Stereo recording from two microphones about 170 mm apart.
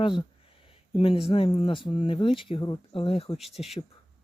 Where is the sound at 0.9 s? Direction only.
30° left (ahead or behind).